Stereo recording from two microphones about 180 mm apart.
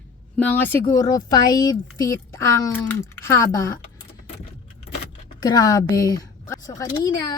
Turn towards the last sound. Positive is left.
turn(degrees=20)  # may be behind; listen again after turning